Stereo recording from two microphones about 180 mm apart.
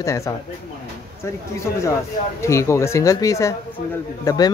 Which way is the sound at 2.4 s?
15° left (ahead or behind).